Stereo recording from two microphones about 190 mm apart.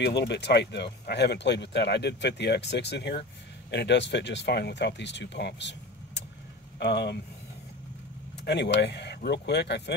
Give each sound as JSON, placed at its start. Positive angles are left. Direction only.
{"t": 0.0, "sound": "speech", "side_deg": 65}
{"t": 8.5, "sound": "speech", "side_deg": 65}